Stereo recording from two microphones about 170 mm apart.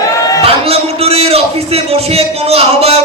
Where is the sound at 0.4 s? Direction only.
35° right (ahead or behind).